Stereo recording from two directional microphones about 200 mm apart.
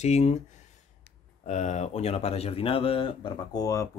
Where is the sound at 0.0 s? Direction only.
35° left (ahead or behind).